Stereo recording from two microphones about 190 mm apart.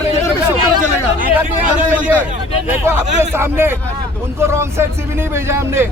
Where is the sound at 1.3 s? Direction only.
10° right (ahead or behind).